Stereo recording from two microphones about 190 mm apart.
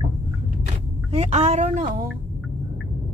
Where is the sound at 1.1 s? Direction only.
35° right (ahead or behind).